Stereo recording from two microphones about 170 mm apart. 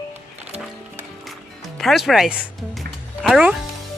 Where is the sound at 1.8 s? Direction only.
Centre (ahead or behind).